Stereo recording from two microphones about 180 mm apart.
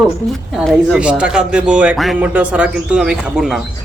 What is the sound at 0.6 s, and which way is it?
Speech, 5° right (ahead or behind).